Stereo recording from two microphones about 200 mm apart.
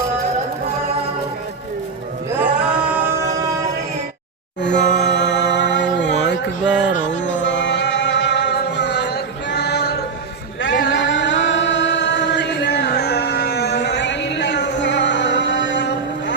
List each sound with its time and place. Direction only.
2.4 s singing: 5° right (ahead or behind)
4.6 s a sound: 60° left (ahead or behind)
7.2 s music: 65° left (ahead or behind)
10.6 s chant: 65° left (ahead or behind)